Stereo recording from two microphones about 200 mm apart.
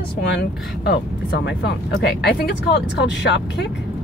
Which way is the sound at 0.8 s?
55° left (ahead or behind).